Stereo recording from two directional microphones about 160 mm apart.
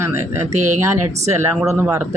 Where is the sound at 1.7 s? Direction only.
15° right (ahead or behind).